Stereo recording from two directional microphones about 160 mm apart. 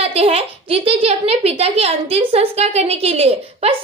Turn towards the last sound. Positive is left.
turn(degrees=-40)  # may be behind; listen again after turning